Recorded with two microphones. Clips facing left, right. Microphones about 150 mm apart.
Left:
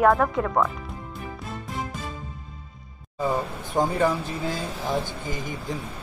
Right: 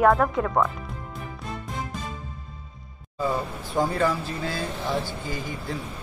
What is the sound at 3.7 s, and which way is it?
Speech, 15° left (ahead or behind).